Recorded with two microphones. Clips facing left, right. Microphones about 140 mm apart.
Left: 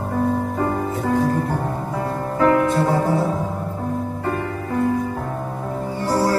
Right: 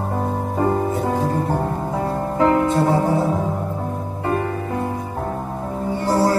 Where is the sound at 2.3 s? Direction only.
20° right (ahead or behind).